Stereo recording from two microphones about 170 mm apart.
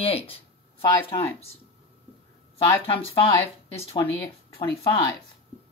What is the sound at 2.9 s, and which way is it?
Speech, 30° left (ahead or behind).